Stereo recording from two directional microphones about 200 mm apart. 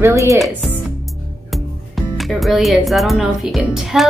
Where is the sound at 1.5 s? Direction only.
Centre (ahead or behind).